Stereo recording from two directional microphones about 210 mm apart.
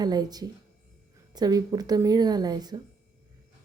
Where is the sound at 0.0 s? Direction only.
20° right (ahead or behind).